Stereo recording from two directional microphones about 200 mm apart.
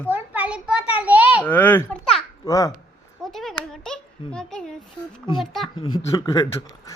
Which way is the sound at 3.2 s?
Centre (ahead or behind).